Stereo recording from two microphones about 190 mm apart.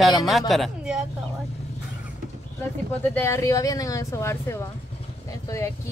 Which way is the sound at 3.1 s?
10° left (ahead or behind).